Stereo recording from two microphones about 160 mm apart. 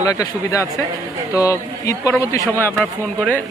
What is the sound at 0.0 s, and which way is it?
Speech, 20° left (ahead or behind).